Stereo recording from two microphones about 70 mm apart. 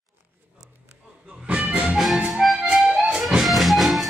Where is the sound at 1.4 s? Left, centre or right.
Centre.